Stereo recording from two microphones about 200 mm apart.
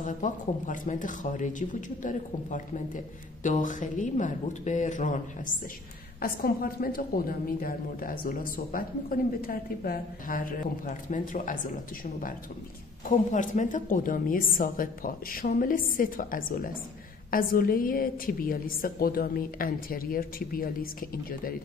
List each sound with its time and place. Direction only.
0.0 s speech: 40° left (ahead or behind)
6.2 s a woman's voice: 45° left (ahead or behind)
13.3 s a woman's voice: 40° left (ahead or behind)